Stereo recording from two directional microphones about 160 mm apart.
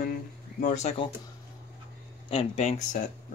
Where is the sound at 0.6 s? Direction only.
45° left (ahead or behind).